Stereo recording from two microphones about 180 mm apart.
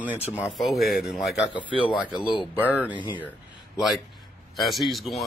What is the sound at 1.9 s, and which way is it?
Speech, 25° left (ahead or behind).